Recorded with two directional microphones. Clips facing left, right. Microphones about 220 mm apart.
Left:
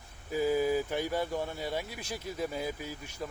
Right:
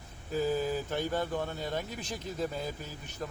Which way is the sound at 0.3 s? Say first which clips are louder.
Left 2 dB; 10° left (ahead or behind).